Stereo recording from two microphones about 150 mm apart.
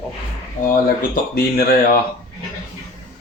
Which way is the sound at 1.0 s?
75° left (ahead or behind).